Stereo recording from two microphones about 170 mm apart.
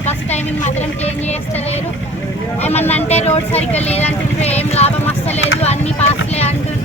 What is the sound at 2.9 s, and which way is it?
Vehicle, 40° left (ahead or behind).